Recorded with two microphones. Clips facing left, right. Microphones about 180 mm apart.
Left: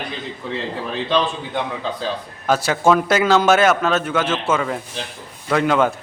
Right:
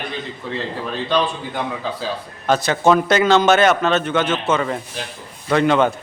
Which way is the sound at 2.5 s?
5° left (ahead or behind).